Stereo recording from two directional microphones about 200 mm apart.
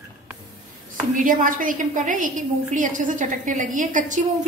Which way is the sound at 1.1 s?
40° right (ahead or behind).